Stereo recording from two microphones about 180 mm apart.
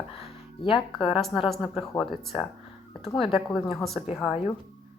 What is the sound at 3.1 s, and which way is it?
Speech, 30° left (ahead or behind).